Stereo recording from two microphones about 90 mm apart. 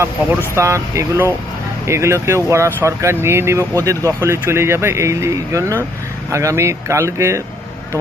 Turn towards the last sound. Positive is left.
turn(degrees=-30)  # may be behind; listen again after turning